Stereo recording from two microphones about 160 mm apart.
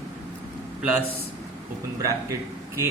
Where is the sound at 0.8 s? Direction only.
10° right (ahead or behind).